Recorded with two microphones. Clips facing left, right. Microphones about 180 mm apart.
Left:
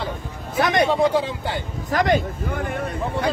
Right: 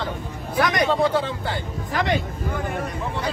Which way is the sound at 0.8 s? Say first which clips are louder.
Left 2 dB; 10° left (ahead or behind).